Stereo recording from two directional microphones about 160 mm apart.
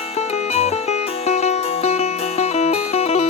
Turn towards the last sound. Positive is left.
turn(degrees=40)  # may be behind; listen again after turning